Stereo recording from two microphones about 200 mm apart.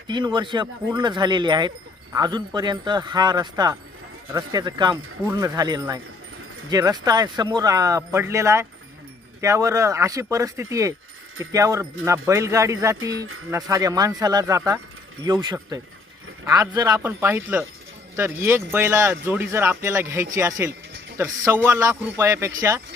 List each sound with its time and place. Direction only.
0.1 s speech: 25° right (ahead or behind)